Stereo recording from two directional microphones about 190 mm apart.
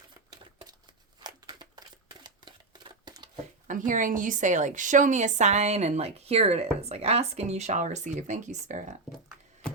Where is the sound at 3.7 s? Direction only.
45° right (ahead or behind).